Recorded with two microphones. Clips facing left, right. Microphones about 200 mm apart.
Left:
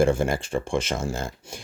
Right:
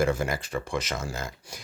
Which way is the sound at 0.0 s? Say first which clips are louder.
Left 5 dB; 30° left (ahead or behind).